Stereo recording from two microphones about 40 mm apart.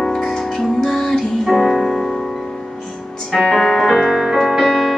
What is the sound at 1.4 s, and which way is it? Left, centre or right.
Music, centre.